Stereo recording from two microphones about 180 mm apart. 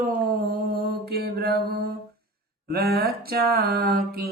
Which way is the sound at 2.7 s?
60° right (ahead or behind).